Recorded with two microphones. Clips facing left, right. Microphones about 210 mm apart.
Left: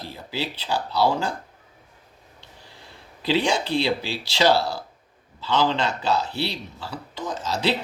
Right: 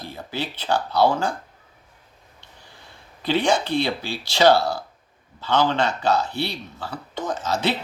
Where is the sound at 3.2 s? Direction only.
55° right (ahead or behind).